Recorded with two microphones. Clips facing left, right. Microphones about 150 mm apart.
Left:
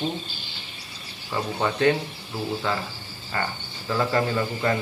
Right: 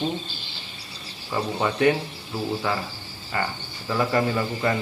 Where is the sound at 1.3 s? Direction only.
10° right (ahead or behind).